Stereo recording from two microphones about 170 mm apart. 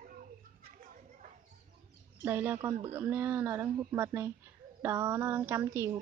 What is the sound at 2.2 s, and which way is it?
Speech, 10° right (ahead or behind).